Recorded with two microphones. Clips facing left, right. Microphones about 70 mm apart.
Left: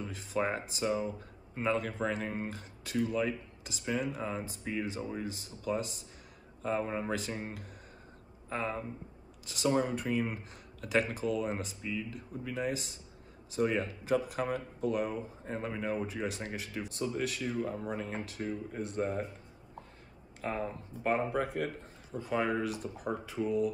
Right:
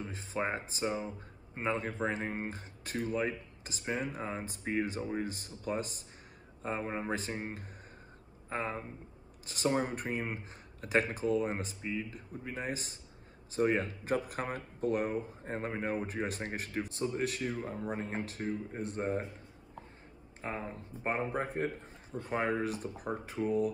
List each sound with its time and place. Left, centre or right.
0.0 s speech: right
6.6 s speech: right
20.4 s speech: right